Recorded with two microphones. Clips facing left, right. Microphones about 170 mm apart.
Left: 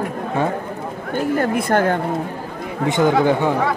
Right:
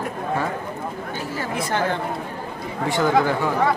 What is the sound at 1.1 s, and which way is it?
Speech, 55° left (ahead or behind).